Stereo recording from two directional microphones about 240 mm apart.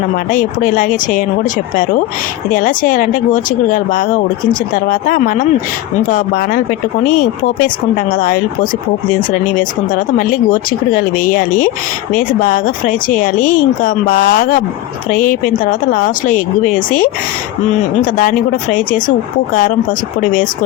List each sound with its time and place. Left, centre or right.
0.3 s speech: left
2.5 s speech: left
8.1 s speech: left
9.6 s speech: left
18.2 s speech: left